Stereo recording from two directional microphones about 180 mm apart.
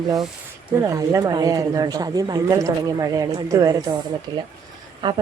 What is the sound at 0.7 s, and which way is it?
Speech, 15° right (ahead or behind).